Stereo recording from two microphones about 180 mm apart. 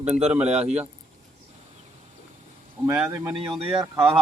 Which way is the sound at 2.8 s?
10° right (ahead or behind).